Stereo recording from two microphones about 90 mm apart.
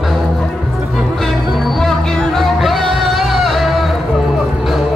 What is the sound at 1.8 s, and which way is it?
Music, 5° left (ahead or behind).